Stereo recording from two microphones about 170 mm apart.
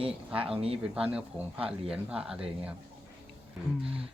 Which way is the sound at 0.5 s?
35° right (ahead or behind).